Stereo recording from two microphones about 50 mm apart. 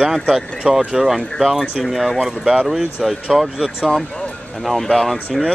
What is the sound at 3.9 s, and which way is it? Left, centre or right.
Speech, centre.